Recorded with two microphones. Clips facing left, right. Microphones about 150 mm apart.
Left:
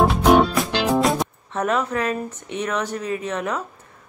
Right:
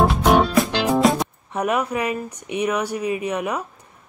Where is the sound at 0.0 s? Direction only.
Centre (ahead or behind).